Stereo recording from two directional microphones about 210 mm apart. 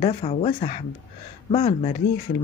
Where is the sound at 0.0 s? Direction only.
30° left (ahead or behind).